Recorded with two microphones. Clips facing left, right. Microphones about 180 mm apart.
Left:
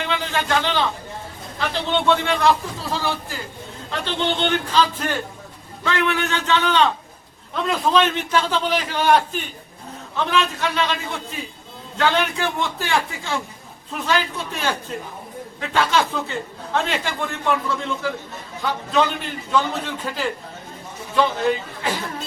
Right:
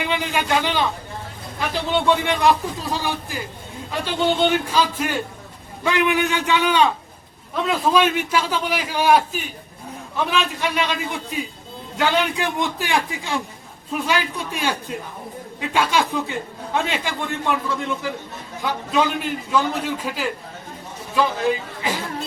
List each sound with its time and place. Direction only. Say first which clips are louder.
0.0 s a man's voice: right 1 dB; 15° right (ahead or behind)
18.6 s a man's voice: even; 10° right (ahead or behind)